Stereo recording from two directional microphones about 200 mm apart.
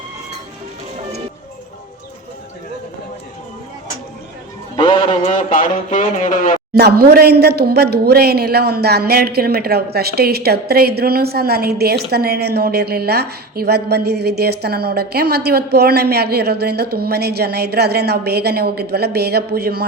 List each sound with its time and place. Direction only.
4.8 s a sound: 20° left (ahead or behind)
5.3 s speech: 40° left (ahead or behind)
6.7 s speech: 50° right (ahead or behind)